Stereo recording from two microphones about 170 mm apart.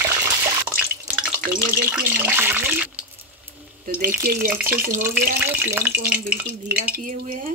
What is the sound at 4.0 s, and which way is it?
Speech, 15° right (ahead or behind).